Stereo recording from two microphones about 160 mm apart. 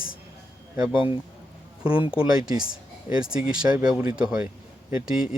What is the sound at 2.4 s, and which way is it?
Speech, 25° right (ahead or behind).